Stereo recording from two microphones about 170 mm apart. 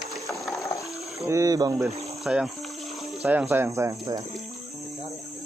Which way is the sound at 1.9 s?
40° right (ahead or behind).